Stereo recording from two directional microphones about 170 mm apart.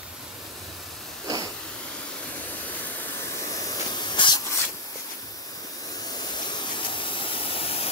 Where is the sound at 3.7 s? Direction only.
25° left (ahead or behind).